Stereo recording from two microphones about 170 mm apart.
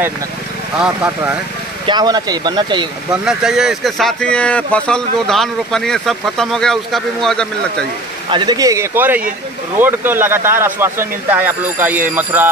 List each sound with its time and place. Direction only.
0.7 s speech: 5° right (ahead or behind)
1.9 s speech: 25° right (ahead or behind)
3.1 s speech: 5° right (ahead or behind)
8.3 s speech: 25° right (ahead or behind)